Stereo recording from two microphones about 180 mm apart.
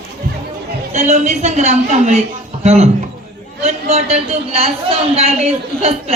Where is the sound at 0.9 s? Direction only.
40° right (ahead or behind).